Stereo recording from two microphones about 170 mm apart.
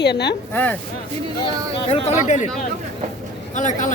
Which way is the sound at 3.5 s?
45° left (ahead or behind).